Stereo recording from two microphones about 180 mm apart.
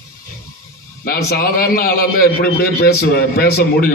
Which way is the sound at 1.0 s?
55° left (ahead or behind).